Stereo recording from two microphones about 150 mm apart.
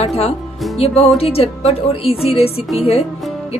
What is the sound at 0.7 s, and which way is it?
Music, 45° left (ahead or behind).